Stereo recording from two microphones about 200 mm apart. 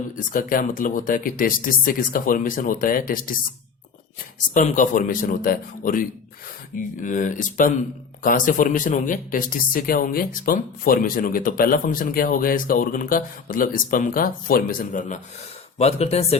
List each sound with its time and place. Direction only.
0.2 s speech: 45° left (ahead or behind)
4.5 s speech: 40° left (ahead or behind)